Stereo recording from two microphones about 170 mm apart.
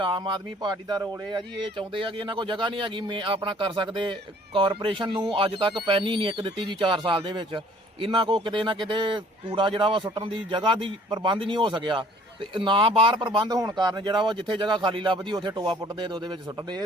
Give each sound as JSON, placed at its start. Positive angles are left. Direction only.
{"t": 0.0, "sound": "speech", "side_deg": -25}